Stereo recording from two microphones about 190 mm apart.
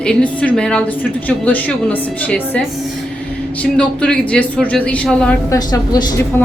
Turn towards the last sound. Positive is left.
turn(degrees=20)  # may be behind; listen again after turning